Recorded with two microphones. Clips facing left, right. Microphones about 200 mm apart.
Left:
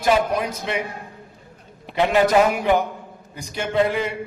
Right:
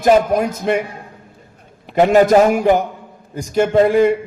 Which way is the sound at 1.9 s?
45° right (ahead or behind).